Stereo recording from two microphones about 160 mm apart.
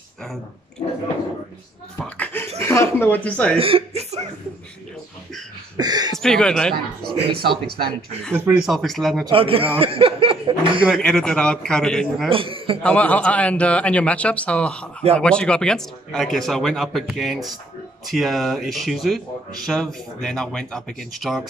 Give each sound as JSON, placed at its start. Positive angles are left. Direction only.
{"t": 0.8, "sound": "drip", "side_deg": 40}
{"t": 2.6, "sound": "a man's voice", "side_deg": 15}
{"t": 3.5, "sound": "speech", "side_deg": -35}
{"t": 5.8, "sound": "speech", "side_deg": -25}
{"t": 6.1, "sound": "speech", "side_deg": 5}
{"t": 7.0, "sound": "speech", "side_deg": -70}
{"t": 8.5, "sound": "speech", "side_deg": 0}
{"t": 9.3, "sound": "speech", "side_deg": -35}
{"t": 11.0, "sound": "speech", "side_deg": 5}
{"t": 12.3, "sound": "speech", "side_deg": -35}
{"t": 12.8, "sound": "a man's voice", "side_deg": 10}